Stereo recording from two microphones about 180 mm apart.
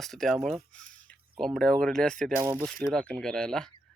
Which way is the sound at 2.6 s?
5° left (ahead or behind).